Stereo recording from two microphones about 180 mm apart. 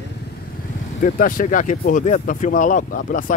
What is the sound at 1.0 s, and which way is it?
Speech, 50° left (ahead or behind).